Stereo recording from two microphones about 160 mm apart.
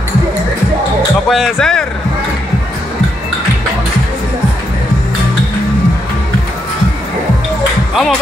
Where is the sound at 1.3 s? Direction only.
Centre (ahead or behind).